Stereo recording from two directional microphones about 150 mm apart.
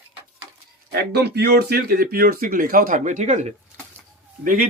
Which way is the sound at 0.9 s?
90° right.